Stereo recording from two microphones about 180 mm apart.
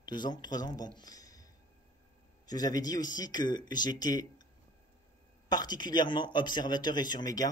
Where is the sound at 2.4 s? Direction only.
20° left (ahead or behind).